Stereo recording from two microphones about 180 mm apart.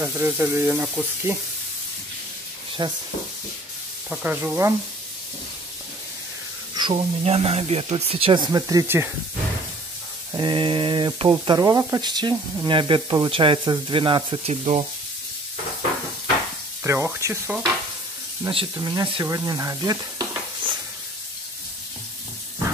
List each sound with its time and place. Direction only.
0.0 s speech: 10° right (ahead or behind)
2.8 s speech: 25° right (ahead or behind)
4.1 s speech: 10° right (ahead or behind)
6.7 s speech: 30° right (ahead or behind); by 9.1 s 15° right (ahead or behind)
10.3 s speech: 25° right (ahead or behind)
16.8 s speech: 15° right (ahead or behind)
18.5 s speech: 25° right (ahead or behind)
20.6 s stir: 30° right (ahead or behind)